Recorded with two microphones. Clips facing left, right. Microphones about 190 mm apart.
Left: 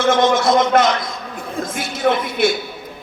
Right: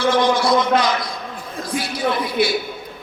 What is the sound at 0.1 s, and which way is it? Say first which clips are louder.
Speech: left 3 dB; 20° left (ahead or behind).